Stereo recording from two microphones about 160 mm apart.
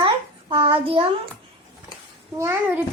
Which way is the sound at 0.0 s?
35° right (ahead or behind).